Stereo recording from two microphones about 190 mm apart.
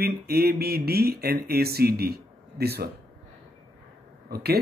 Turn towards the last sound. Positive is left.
turn(degrees=-55)  # may be behind; listen again after turning